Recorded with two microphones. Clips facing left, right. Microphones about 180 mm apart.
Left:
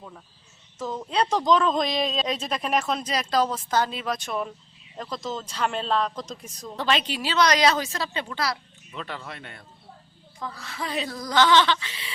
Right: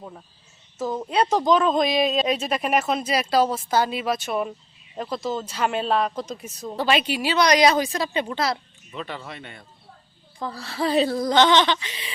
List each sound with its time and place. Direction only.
1.1 s speech: 5° right (ahead or behind); by 8.5 s 25° right (ahead or behind)
8.9 s speech: centre (ahead or behind)
10.4 s speech: 30° right (ahead or behind)